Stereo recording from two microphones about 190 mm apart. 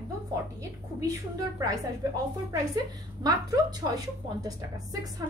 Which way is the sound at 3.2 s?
20° right (ahead or behind).